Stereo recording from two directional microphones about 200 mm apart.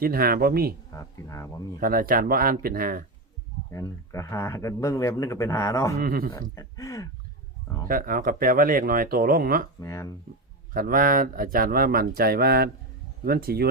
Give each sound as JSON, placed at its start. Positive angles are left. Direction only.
{"t": 0.0, "sound": "speech", "side_deg": -50}
{"t": 0.9, "sound": "speech", "side_deg": 15}
{"t": 1.8, "sound": "speech", "side_deg": -45}
{"t": 3.7, "sound": "speech", "side_deg": 15}
{"t": 6.0, "sound": "speech", "side_deg": -50}
{"t": 6.6, "sound": "speech", "side_deg": 15}
{"t": 7.9, "sound": "speech", "side_deg": -45}
{"t": 9.8, "sound": "speech", "side_deg": 15}
{"t": 10.8, "sound": "speech", "side_deg": -45}